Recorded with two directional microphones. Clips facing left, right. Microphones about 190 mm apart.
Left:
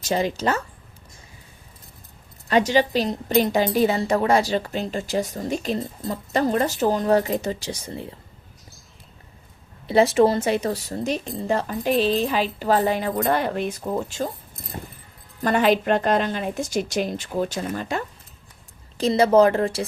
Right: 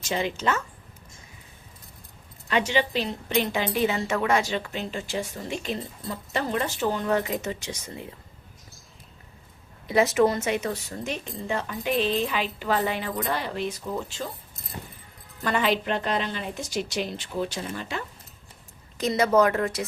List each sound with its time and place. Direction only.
0.1 s a woman's voice: 40° left (ahead or behind)
2.5 s a woman's voice: 40° left (ahead or behind)
9.8 s a woman's voice: 30° left (ahead or behind); by 14.3 s 45° left (ahead or behind)
15.4 s speech: 45° left (ahead or behind)
18.9 s speech: 30° left (ahead or behind)